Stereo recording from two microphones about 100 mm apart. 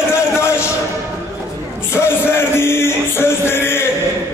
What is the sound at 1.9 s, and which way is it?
Music, 25° left (ahead or behind).